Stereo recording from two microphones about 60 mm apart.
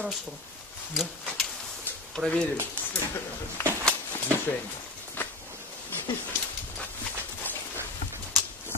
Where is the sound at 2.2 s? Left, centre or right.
Right.